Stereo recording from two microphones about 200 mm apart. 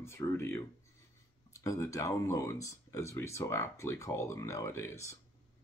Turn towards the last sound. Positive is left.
turn(degrees=15)  # may be behind; listen again after turning